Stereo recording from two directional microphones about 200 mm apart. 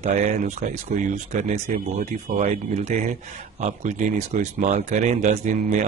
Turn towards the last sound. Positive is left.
turn(degrees=-35)  # may be behind; listen again after turning